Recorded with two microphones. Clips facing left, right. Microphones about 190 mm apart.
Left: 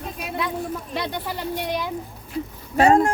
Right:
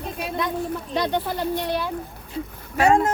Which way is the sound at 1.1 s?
10° left (ahead or behind).